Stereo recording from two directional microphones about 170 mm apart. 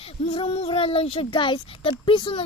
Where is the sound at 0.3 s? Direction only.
35° left (ahead or behind).